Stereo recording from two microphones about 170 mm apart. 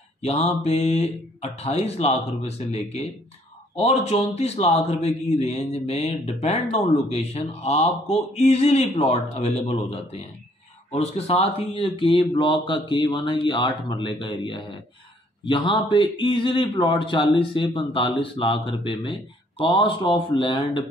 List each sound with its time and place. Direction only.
0.2 s mantra: 35° left (ahead or behind)
0.7 s a man's voice: 40° left (ahead or behind)
7.6 s a man's voice: 35° left (ahead or behind)
19.6 s speech: 30° left (ahead or behind)